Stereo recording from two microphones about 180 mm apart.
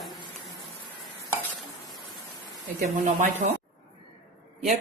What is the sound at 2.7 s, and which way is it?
Speech, 45° right (ahead or behind).